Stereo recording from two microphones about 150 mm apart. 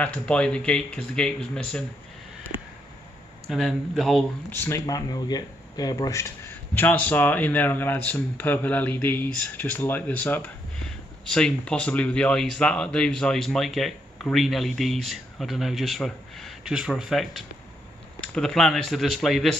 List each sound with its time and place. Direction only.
0.0 s speech: 10° left (ahead or behind)
2.5 s a sound: 35° left (ahead or behind)
3.4 s speech: centre (ahead or behind)
4.5 s speech: 15° left (ahead or behind); by 19.5 s centre (ahead or behind)